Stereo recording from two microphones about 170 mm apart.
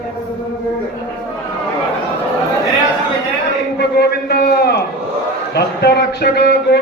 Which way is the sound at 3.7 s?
70° left (ahead or behind).